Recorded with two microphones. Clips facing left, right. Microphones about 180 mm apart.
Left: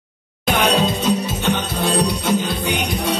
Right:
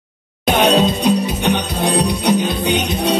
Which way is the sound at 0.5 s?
20° right (ahead or behind).